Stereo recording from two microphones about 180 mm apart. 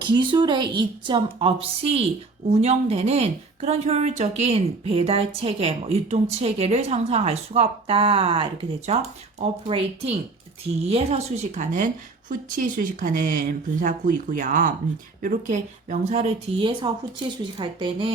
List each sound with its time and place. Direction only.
0.0 s a woman's voice: 25° right (ahead or behind)